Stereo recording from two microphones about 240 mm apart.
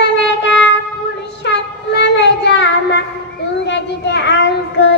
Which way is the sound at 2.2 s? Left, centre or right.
Left.